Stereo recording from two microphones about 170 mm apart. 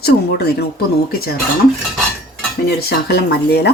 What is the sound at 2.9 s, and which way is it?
Speech, 70° left (ahead or behind).